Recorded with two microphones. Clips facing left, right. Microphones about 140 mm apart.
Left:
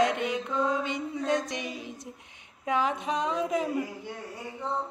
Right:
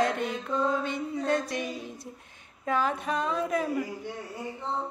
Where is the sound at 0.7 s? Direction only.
15° left (ahead or behind).